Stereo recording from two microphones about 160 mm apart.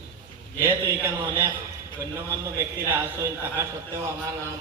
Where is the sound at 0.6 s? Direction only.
15° right (ahead or behind).